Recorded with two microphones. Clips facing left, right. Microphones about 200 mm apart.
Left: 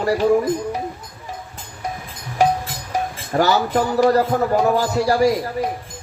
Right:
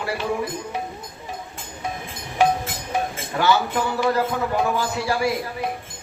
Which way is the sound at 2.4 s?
40° left (ahead or behind).